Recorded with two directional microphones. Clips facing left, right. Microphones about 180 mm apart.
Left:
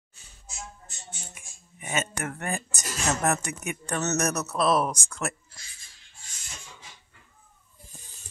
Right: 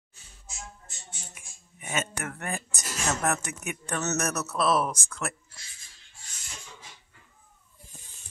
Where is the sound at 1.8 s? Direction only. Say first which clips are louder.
Left 2 dB; centre (ahead or behind).